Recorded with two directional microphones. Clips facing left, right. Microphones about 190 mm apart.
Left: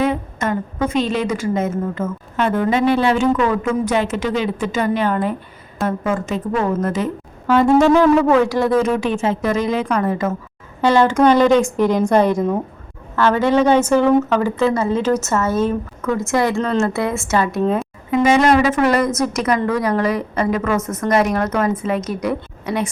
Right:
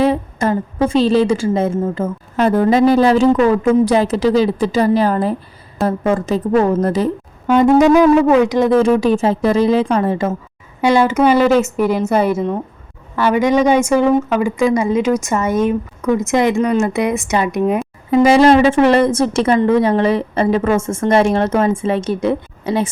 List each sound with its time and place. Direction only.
0.0 s a woman's voice: 35° right (ahead or behind)
7.4 s a woman's voice: 20° right (ahead or behind)
8.8 s a woman's voice: 35° right (ahead or behind)
10.8 s a woman's voice: 10° right (ahead or behind)
18.1 s a woman's voice: 35° right (ahead or behind)